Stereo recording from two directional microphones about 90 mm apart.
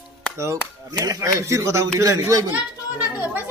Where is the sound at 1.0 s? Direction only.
35° right (ahead or behind).